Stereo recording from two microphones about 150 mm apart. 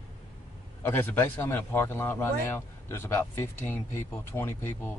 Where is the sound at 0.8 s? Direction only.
15° left (ahead or behind).